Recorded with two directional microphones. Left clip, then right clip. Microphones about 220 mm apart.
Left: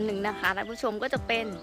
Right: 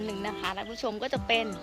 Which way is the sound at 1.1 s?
10° left (ahead or behind).